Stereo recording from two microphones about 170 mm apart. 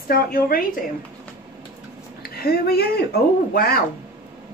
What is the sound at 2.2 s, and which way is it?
A woman's voice, 65° left (ahead or behind).